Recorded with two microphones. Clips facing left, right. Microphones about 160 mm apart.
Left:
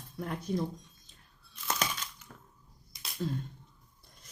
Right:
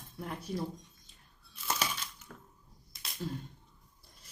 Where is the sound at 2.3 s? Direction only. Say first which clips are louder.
Right 2 dB; 30° left (ahead or behind).